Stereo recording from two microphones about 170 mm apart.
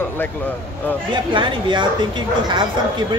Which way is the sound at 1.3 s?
30° right (ahead or behind).